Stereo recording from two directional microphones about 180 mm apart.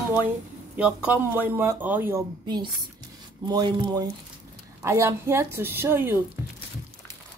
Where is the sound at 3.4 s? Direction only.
25° right (ahead or behind).